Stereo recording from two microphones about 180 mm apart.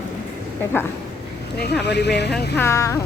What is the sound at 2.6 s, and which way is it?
Speech, 15° left (ahead or behind).